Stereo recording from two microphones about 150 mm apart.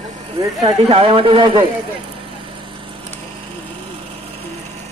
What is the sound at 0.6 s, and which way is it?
Speech, 40° right (ahead or behind).